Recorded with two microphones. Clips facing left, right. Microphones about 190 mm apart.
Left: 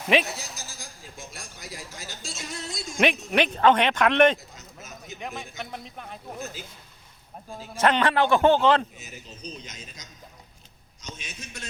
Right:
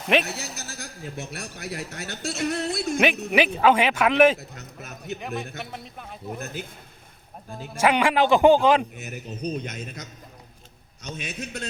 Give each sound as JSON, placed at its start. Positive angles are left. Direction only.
{"t": 0.1, "sound": "a man's voice", "side_deg": 0}
{"t": 0.3, "sound": "a man's voice", "side_deg": -65}
{"t": 3.3, "sound": "a man's voice", "side_deg": -5}
{"t": 4.4, "sound": "speech", "side_deg": -65}
{"t": 5.2, "sound": "a man's voice", "side_deg": 0}
{"t": 6.4, "sound": "a man's voice", "side_deg": -60}
{"t": 7.5, "sound": "a man's voice", "side_deg": 0}
{"t": 9.0, "sound": "a man's voice", "side_deg": -60}